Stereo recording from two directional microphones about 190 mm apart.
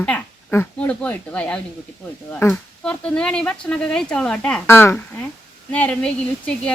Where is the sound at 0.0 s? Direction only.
10° left (ahead or behind).